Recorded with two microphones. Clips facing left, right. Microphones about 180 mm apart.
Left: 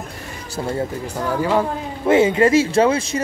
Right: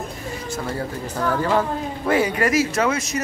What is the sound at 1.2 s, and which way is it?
Speech, 10° left (ahead or behind).